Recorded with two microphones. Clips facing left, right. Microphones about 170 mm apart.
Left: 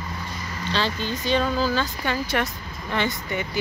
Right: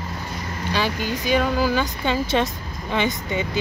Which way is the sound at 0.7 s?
10° right (ahead or behind).